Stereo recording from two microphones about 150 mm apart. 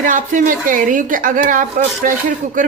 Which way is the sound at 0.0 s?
60° right (ahead or behind).